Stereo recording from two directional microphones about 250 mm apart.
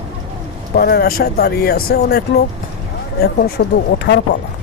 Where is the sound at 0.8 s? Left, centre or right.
Left.